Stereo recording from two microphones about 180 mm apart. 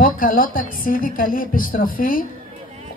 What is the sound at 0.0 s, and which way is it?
Speech, 50° left (ahead or behind).